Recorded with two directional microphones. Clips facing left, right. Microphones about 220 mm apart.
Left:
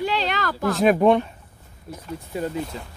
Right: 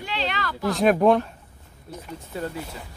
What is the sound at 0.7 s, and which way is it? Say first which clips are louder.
Speech: left 1 dB; centre (ahead or behind).